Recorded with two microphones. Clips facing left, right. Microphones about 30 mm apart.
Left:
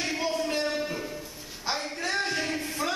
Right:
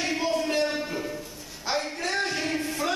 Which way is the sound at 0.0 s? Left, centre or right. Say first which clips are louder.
Right 2 dB; centre.